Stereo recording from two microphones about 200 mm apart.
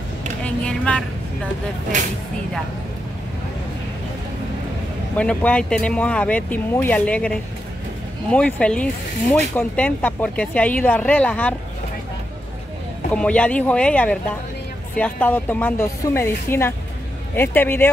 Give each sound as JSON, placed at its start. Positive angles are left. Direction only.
{"t": 0.4, "sound": "speech", "side_deg": 5}
{"t": 1.9, "sound": "speech", "side_deg": -35}
{"t": 5.1, "sound": "speech", "side_deg": 5}
{"t": 13.1, "sound": "speech", "side_deg": 5}